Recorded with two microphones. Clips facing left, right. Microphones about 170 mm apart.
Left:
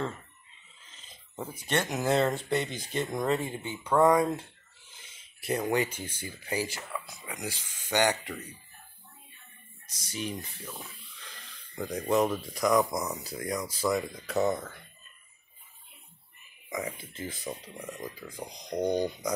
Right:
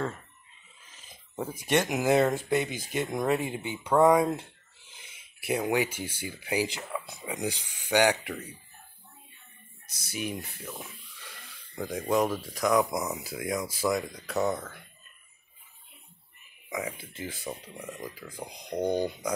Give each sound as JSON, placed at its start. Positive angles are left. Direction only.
{"t": 1.6, "sound": "speech", "side_deg": -15}
{"t": 9.8, "sound": "speech", "side_deg": -10}
{"t": 16.6, "sound": "a sound", "side_deg": -5}
{"t": 17.2, "sound": "speech", "side_deg": -5}
{"t": 18.5, "sound": "speech", "side_deg": -30}
{"t": 18.8, "sound": "speech", "side_deg": -5}